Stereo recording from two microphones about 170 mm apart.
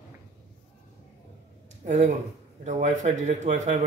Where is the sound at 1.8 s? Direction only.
45° right (ahead or behind).